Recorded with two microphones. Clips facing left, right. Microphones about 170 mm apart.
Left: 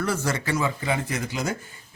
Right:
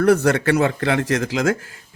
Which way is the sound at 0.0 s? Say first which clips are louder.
Right 11 dB; 60° right (ahead or behind).